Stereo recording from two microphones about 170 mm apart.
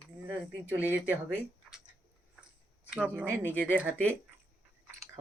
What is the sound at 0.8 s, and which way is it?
Speech, 10° right (ahead or behind).